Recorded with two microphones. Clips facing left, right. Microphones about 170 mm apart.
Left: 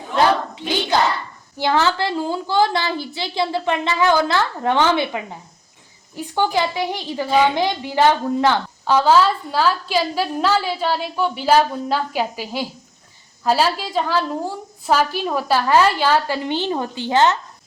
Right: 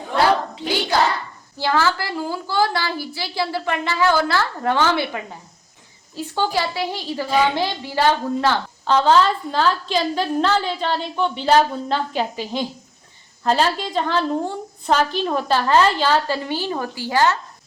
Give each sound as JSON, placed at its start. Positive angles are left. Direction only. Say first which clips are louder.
{"t": 1.5, "sound": "a woman's voice", "louder": "left 2 dB", "side_deg": 20}